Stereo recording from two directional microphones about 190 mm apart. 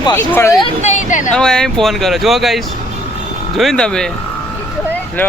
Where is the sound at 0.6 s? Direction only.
35° left (ahead or behind).